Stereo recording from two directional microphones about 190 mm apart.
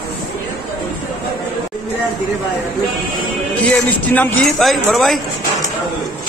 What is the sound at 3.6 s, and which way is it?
A man's voice, 10° left (ahead or behind).